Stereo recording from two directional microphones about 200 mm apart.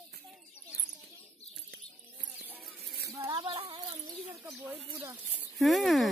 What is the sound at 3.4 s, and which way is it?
Speech, 25° right (ahead or behind).